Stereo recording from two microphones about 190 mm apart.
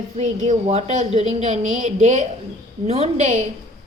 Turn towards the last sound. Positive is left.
turn(degrees=-35)  # may be behind; listen again after turning